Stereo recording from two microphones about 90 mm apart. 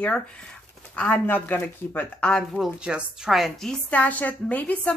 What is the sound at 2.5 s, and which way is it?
A woman's voice, 5° right (ahead or behind).